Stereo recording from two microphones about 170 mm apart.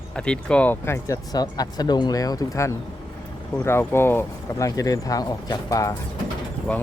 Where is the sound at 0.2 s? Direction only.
5° left (ahead or behind); by 6.0 s 20° left (ahead or behind).